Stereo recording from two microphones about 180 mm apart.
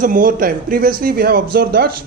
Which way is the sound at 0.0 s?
50° right (ahead or behind).